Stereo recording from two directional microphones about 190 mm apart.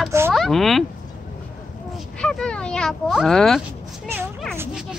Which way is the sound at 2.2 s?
5° left (ahead or behind).